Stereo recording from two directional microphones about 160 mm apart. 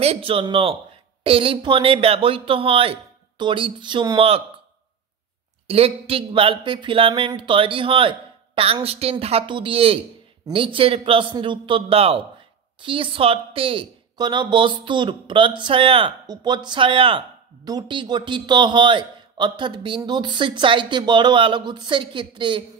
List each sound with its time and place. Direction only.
0.0 s speech: 40° right (ahead or behind)
5.7 s a man's voice: 40° right (ahead or behind)